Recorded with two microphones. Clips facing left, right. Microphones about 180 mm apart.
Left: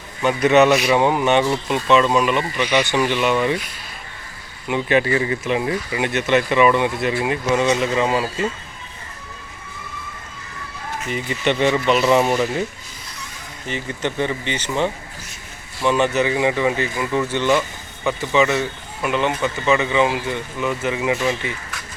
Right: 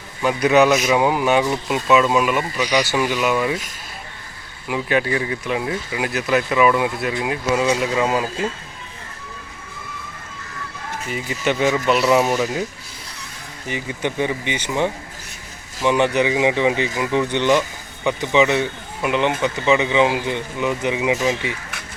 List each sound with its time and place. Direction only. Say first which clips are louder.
0.2 s speech: left 1 dB; centre (ahead or behind)
4.7 s speech: left 2 dB; centre (ahead or behind)
11.1 s speech: left 1 dB; 5° right (ahead or behind)
13.7 s a man's voice: even; 10° right (ahead or behind)